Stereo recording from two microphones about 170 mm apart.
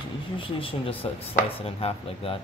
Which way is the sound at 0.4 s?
30° left (ahead or behind).